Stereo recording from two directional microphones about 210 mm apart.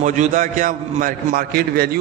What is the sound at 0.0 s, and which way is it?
A man's voice, 35° right (ahead or behind).